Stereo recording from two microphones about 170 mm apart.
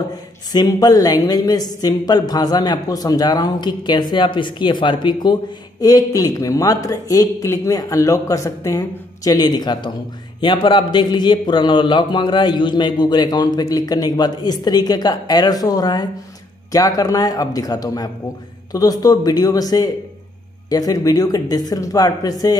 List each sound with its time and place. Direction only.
0.1 s a woman's voice: 20° left (ahead or behind)